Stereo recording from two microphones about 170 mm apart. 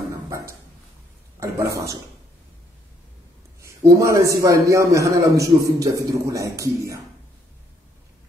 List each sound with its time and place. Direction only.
1.4 s speech: 15° right (ahead or behind)
3.6 s a man's voice: 20° right (ahead or behind)